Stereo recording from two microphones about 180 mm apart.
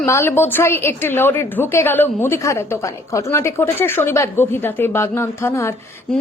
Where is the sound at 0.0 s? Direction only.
15° left (ahead or behind).